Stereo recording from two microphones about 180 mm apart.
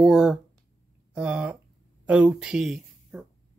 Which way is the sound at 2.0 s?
5° right (ahead or behind).